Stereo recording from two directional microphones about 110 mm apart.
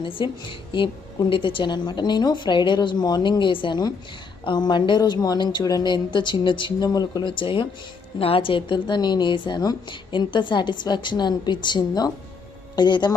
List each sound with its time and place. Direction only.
0.0 s a woman's voice: 50° left (ahead or behind)